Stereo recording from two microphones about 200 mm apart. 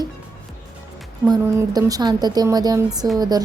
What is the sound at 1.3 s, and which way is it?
Speech, 20° right (ahead or behind).